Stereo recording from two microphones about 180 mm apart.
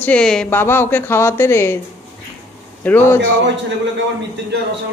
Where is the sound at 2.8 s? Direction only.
10° left (ahead or behind).